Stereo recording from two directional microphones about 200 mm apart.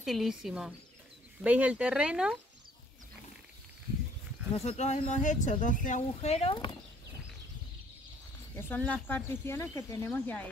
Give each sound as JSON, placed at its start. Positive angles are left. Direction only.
{"t": 0.0, "sound": "speech", "side_deg": 0}
{"t": 4.6, "sound": "speech", "side_deg": 35}
{"t": 8.5, "sound": "speech", "side_deg": 10}